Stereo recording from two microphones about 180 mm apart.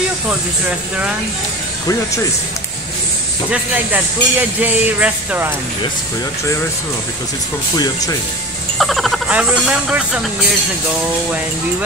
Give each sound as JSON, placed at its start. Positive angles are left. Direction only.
{"t": 0.3, "sound": "speech", "side_deg": -5}
{"t": 3.9, "sound": "speech", "side_deg": -10}
{"t": 7.7, "sound": "speech", "side_deg": 20}
{"t": 8.7, "sound": "speech", "side_deg": 0}